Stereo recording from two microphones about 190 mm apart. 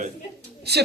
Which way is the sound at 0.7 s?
60° right (ahead or behind).